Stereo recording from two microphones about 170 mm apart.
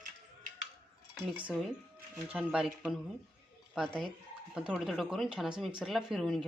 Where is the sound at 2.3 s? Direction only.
5° right (ahead or behind).